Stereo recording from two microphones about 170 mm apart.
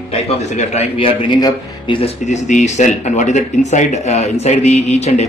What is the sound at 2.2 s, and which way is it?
A man's voice, 45° left (ahead or behind).